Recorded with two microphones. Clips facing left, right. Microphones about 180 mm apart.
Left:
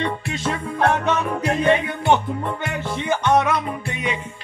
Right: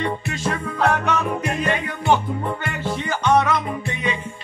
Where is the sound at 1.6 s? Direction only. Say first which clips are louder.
Left 5 dB; 25° left (ahead or behind).